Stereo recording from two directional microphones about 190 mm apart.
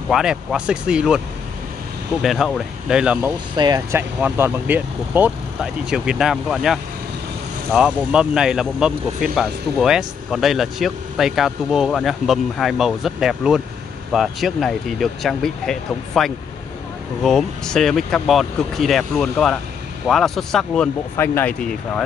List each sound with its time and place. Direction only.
0.1 s speech: 5° right (ahead or behind)
2.2 s speech: centre (ahead or behind)
3.5 s speech: 20° right (ahead or behind); by 22.0 s 5° left (ahead or behind)